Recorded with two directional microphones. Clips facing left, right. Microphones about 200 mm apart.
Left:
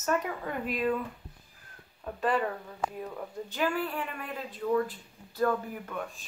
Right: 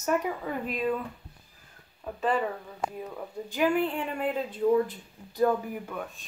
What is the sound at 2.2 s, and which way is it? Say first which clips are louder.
Speech: right 1 dB; 5° right (ahead or behind).